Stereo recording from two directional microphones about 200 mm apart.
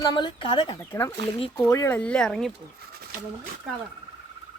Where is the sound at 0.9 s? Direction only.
15° left (ahead or behind).